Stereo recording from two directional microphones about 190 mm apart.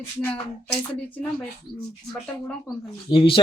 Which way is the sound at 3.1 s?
30° left (ahead or behind).